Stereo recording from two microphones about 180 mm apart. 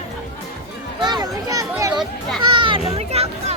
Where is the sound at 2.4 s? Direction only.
30° right (ahead or behind).